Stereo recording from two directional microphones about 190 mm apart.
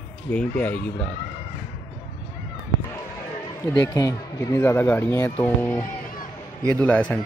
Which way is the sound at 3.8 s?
15° left (ahead or behind).